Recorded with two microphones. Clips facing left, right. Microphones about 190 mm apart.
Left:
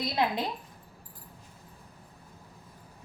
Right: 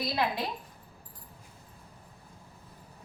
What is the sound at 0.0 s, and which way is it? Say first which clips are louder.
Speech: left 2 dB; 20° left (ahead or behind).